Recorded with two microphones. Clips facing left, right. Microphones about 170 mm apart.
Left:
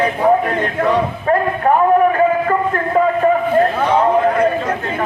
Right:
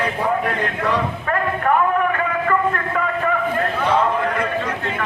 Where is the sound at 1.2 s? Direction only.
30° left (ahead or behind).